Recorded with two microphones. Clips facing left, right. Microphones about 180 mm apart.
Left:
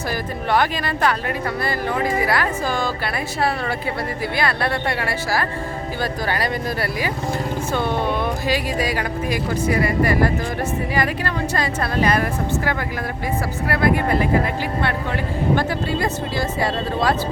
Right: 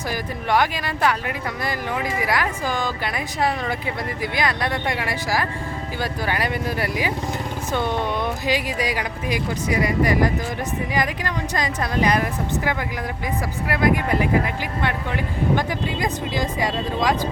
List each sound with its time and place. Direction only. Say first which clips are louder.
0.5 s speech: left 1 dB; 10° right (ahead or behind)
2.2 s speech: left 2 dB; 15° right (ahead or behind)
15.5 s speech: left 3 dB; 15° right (ahead or behind)